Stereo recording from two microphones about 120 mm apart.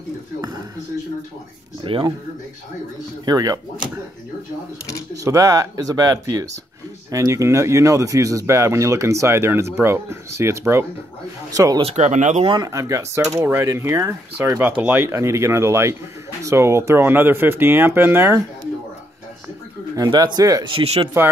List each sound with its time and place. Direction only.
1.8 s speech: 40° right (ahead or behind)
3.3 s speech: 30° right (ahead or behind)
5.1 s speech: 25° right (ahead or behind)
11.8 s speech: 70° right (ahead or behind); by 12.4 s 85° right
12.4 s speech: 30° right (ahead or behind)
20.0 s speech: 35° right (ahead or behind)
20.6 s speech: 55° right (ahead or behind)